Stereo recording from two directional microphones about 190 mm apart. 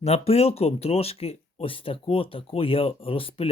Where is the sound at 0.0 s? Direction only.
30° left (ahead or behind).